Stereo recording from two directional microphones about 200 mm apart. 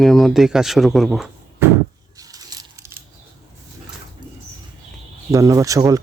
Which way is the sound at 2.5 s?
20° right (ahead or behind).